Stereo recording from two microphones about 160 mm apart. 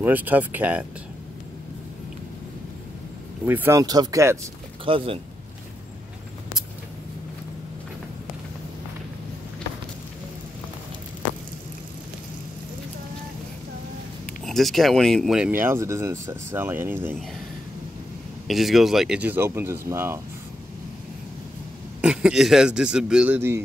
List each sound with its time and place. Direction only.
0.0 s speech: 10° right (ahead or behind)
3.4 s speech: 15° right (ahead or behind)
3.8 s speech: 25° right (ahead or behind)
4.8 s speech: 35° right (ahead or behind)
14.4 s speech: centre (ahead or behind)
15.5 s speech: 15° right (ahead or behind)
18.5 s speech: centre (ahead or behind)
22.0 s a man's voice: 5° right (ahead or behind)